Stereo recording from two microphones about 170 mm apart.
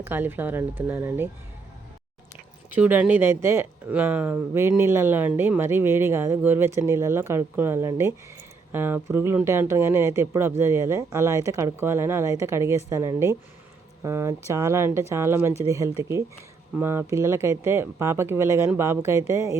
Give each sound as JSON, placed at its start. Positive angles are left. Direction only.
{"t": 0.0, "sound": "speech", "side_deg": -10}
{"t": 2.6, "sound": "speech", "side_deg": -10}